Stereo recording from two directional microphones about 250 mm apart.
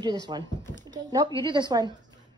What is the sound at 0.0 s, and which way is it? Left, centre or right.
Speech, centre.